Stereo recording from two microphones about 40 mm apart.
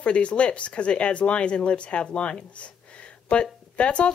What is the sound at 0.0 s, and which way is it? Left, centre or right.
Speech, left.